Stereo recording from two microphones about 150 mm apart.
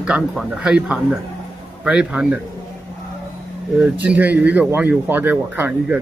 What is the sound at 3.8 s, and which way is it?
Speech, 10° right (ahead or behind).